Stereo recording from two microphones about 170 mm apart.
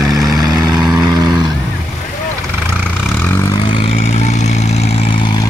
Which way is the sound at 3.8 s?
40° left (ahead or behind).